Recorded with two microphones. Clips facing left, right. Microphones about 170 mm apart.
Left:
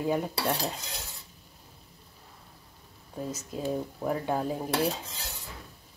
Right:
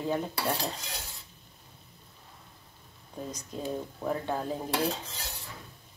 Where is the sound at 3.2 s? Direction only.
5° left (ahead or behind).